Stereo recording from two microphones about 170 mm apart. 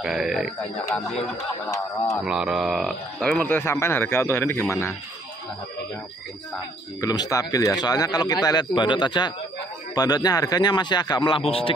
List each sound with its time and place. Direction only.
0.0 s speech: 5° right (ahead or behind)
2.2 s speech: 5° right (ahead or behind); by 4.9 s 15° left (ahead or behind)
7.0 s speech: 20° left (ahead or behind)